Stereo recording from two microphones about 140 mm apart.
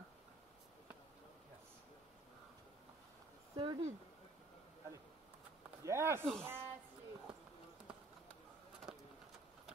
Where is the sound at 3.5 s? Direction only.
30° right (ahead or behind).